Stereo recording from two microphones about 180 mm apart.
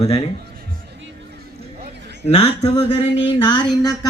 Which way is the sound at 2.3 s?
35° left (ahead or behind).